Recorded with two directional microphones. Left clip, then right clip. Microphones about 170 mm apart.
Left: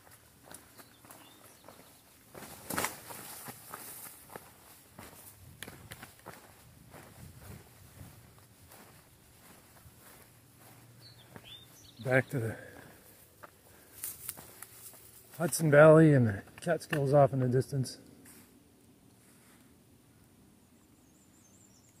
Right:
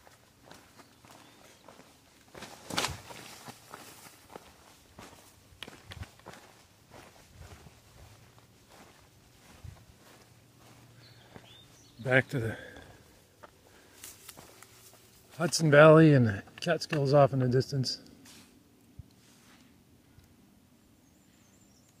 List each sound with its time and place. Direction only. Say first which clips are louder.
3.1 s walk: right 1 dB; 5° left (ahead or behind)
5.9 s run: right 1 dB; 5° right (ahead or behind)
12.1 s speech: right 3 dB; 20° right (ahead or behind)
14.0 s a sound: left 2 dB; 10° right (ahead or behind)
15.3 s speech: right 2 dB; 20° right (ahead or behind)